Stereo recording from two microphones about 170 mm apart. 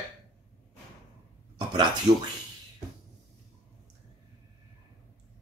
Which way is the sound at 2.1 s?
40° right (ahead or behind).